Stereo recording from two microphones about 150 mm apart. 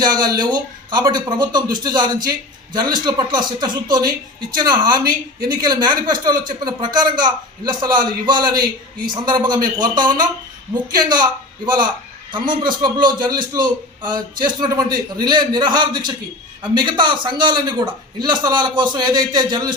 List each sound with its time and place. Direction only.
0.2 s a man's voice: 30° right (ahead or behind)